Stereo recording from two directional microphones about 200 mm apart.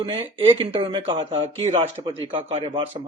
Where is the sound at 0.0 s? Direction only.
25° right (ahead or behind).